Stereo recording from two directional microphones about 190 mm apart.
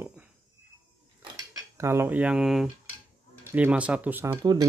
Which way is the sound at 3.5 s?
5° right (ahead or behind).